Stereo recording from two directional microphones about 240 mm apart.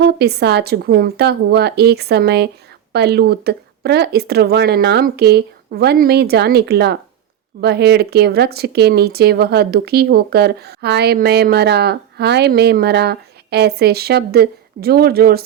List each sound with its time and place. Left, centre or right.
0.0 s a woman's voice: right